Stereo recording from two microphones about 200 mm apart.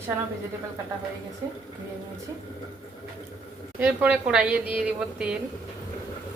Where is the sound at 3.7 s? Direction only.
5° right (ahead or behind).